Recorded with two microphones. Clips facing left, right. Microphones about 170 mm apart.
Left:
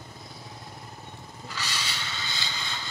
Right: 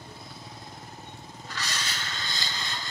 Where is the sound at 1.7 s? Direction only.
45° right (ahead or behind).